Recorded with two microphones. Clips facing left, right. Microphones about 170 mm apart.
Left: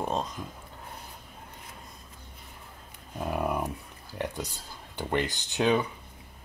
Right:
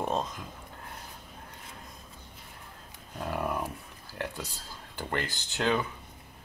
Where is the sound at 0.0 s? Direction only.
Centre (ahead or behind).